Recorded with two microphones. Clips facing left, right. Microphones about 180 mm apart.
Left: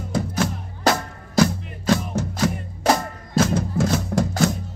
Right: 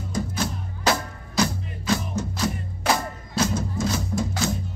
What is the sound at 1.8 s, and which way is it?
Music, 60° left (ahead or behind).